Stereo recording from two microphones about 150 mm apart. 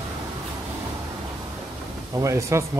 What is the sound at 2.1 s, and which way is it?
Speech, 20° right (ahead or behind).